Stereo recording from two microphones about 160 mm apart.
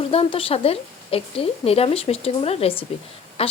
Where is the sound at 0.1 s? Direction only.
35° left (ahead or behind).